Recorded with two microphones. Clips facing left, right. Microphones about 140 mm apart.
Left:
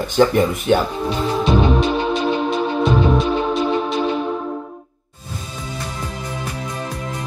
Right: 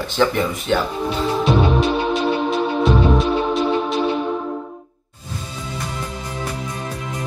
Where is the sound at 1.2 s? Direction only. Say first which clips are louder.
Left 1 dB; 5° right (ahead or behind).